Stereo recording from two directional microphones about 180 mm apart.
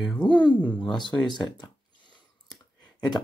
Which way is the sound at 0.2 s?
25° left (ahead or behind).